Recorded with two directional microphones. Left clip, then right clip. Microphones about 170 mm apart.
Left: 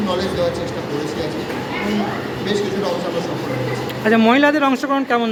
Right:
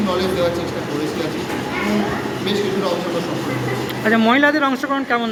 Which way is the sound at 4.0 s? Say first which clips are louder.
Left 1 dB; 15° left (ahead or behind).